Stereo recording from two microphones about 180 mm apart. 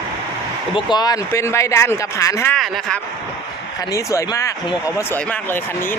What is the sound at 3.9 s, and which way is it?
Speech, 15° left (ahead or behind).